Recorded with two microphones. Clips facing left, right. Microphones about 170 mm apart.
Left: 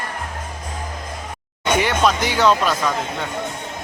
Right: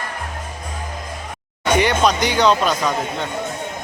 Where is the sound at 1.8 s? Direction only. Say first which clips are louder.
Right 2 dB; centre (ahead or behind).